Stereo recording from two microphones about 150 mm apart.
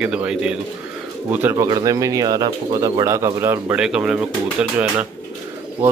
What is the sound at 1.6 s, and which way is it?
Speech, 25° right (ahead or behind).